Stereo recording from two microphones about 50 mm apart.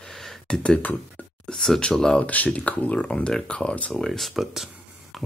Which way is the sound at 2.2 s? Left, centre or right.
Left.